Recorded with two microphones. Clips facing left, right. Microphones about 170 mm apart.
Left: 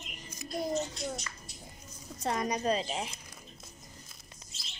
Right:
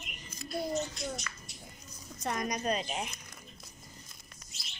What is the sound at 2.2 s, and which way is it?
Speech, 30° left (ahead or behind).